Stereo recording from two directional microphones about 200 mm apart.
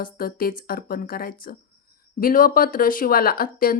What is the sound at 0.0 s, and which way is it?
A woman's voice, 45° left (ahead or behind).